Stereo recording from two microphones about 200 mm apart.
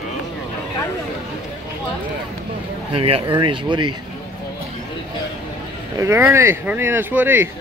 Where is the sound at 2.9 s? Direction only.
30° right (ahead or behind).